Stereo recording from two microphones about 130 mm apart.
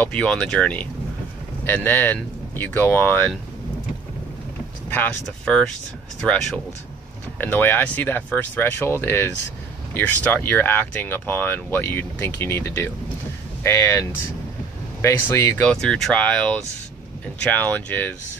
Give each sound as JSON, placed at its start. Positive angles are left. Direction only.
{"t": 0.0, "sound": "speech", "side_deg": 10}
{"t": 4.8, "sound": "a sound", "side_deg": 10}
{"t": 5.2, "sound": "speech", "side_deg": 5}
{"t": 15.6, "sound": "speech", "side_deg": 5}